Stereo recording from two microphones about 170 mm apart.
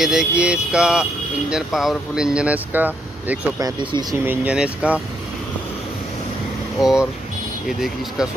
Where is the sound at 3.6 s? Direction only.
25° right (ahead or behind).